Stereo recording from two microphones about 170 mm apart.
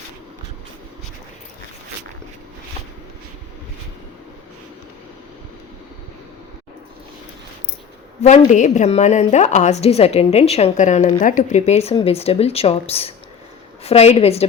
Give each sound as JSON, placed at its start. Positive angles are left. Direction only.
{"t": 8.2, "sound": "a woman's voice", "side_deg": 40}